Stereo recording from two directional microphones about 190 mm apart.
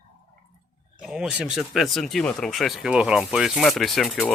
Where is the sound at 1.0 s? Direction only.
5° right (ahead or behind).